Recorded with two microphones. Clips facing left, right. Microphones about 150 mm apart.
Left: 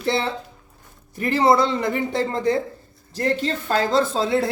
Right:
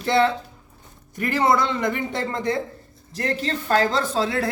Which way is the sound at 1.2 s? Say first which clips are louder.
Left 3 dB; 30° left (ahead or behind).